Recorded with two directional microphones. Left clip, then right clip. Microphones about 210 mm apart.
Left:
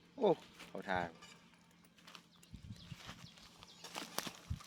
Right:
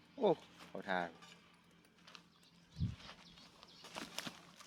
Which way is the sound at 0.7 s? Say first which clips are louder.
Even; centre (ahead or behind).